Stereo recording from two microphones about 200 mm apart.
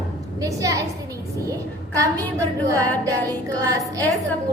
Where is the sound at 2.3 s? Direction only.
15° right (ahead or behind).